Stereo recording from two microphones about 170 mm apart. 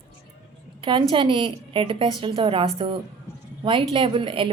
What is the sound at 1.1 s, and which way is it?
A woman's voice, 30° right (ahead or behind).